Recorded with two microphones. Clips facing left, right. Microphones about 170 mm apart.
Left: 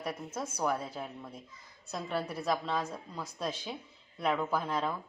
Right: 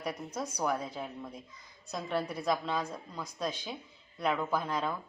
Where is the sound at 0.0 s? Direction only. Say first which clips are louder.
Right 1 dB; 5° left (ahead or behind).